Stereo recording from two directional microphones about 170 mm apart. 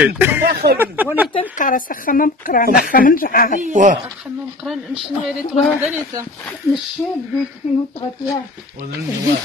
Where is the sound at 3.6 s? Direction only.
45° right (ahead or behind).